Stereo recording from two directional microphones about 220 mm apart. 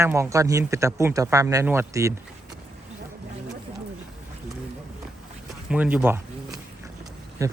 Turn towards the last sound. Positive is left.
turn(degrees=-15)  # may be behind; listen again after turning